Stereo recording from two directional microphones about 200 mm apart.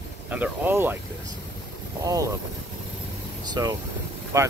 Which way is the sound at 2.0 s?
15° right (ahead or behind).